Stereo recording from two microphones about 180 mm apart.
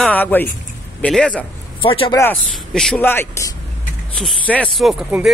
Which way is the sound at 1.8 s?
30° left (ahead or behind).